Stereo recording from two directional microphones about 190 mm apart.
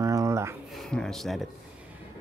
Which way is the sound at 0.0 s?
15° right (ahead or behind).